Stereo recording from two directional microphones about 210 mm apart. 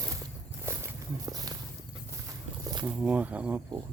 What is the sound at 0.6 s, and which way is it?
Walk, 15° right (ahead or behind).